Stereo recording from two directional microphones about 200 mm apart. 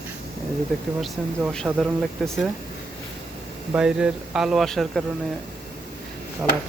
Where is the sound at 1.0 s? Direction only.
5° right (ahead or behind).